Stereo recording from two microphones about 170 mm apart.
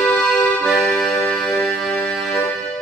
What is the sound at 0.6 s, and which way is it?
Music, 5° left (ahead or behind).